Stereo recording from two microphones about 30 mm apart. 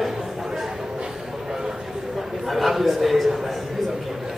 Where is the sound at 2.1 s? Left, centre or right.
Centre.